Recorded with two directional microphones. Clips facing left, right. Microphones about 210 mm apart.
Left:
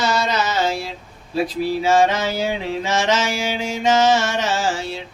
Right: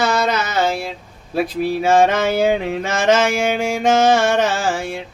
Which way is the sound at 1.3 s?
55° right (ahead or behind).